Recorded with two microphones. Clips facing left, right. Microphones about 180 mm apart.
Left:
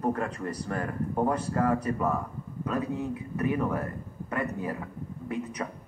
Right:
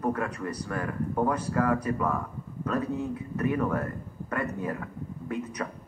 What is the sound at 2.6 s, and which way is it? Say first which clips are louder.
Speech: right 1 dB; 15° left (ahead or behind).